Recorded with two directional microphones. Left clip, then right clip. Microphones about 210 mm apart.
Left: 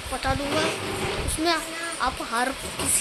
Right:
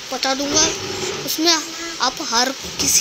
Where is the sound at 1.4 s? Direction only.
15° right (ahead or behind).